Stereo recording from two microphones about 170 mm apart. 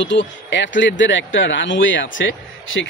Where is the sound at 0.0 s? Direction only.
90° left.